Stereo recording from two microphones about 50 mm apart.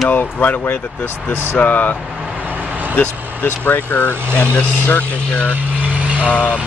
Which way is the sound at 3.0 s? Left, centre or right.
Left.